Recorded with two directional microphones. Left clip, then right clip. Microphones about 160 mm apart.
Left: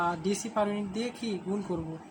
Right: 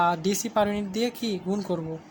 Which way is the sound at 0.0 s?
55° right (ahead or behind).